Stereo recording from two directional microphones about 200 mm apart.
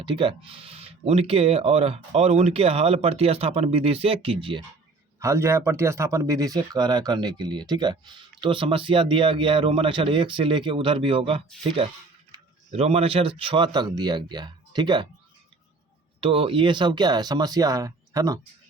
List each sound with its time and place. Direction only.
0.0 s speech: 25° right (ahead or behind)
5.2 s speech: 15° right (ahead or behind)
16.2 s speech: 25° right (ahead or behind)